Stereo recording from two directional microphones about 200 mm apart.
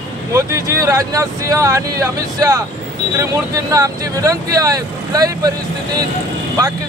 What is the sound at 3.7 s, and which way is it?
Speech, 15° right (ahead or behind).